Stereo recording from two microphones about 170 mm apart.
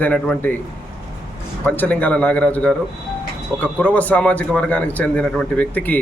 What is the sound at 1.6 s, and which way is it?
Speech, 10° left (ahead or behind).